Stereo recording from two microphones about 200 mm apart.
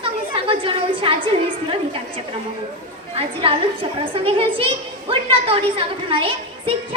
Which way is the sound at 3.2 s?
25° right (ahead or behind).